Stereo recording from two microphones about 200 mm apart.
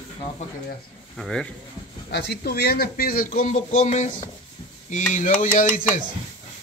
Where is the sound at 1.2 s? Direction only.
5° left (ahead or behind).